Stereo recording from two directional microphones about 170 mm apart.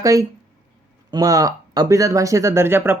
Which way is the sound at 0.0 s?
20° right (ahead or behind).